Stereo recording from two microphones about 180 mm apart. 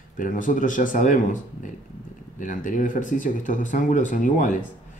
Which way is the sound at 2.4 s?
45° left (ahead or behind).